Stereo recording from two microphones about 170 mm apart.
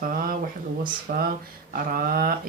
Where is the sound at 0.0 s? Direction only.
55° right (ahead or behind).